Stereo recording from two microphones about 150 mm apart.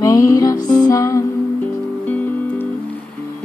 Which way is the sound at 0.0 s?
20° left (ahead or behind).